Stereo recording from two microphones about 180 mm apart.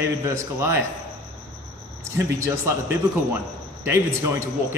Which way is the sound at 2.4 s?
15° right (ahead or behind).